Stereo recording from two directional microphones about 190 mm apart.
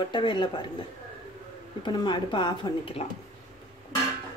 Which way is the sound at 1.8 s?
20° left (ahead or behind).